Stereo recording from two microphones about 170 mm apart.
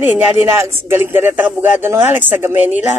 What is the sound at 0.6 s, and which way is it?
A man's voice, 15° right (ahead or behind).